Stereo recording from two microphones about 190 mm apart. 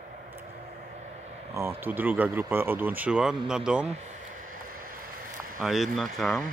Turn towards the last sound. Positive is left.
turn(degrees=0)  # may be behind; listen again after turning